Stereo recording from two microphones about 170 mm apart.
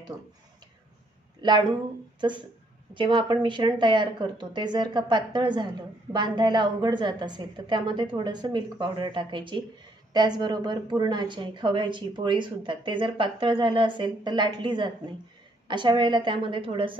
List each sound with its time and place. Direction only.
1.4 s speech: 25° right (ahead or behind)